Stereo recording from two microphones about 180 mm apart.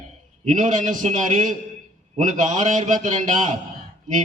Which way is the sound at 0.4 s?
45° right (ahead or behind).